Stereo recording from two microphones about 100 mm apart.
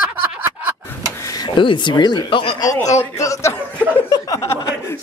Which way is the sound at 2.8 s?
30° left (ahead or behind).